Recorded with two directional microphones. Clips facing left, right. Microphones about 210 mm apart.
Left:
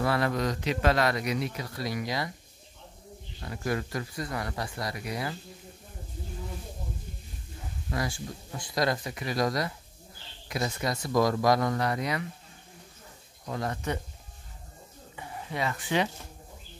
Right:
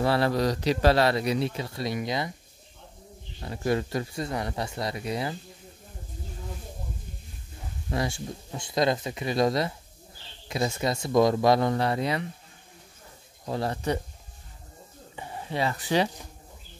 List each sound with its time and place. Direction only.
0.0 s a man's voice: 30° right (ahead or behind)
3.3 s a man's voice: 25° right (ahead or behind)
7.9 s a man's voice: 25° right (ahead or behind)
13.5 s speech: 30° right (ahead or behind)
15.1 s a sound: 30° right (ahead or behind)